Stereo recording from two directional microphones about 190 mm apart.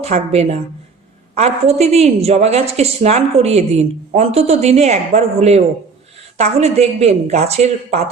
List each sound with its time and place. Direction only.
0.0 s a woman's voice: 35° right (ahead or behind)